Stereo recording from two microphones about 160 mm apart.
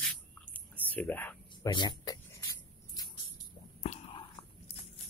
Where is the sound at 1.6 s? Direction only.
25° left (ahead or behind).